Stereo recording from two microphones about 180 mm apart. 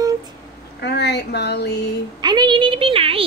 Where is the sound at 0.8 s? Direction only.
65° left (ahead or behind).